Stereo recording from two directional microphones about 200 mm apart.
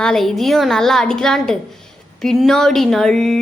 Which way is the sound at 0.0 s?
Centre (ahead or behind).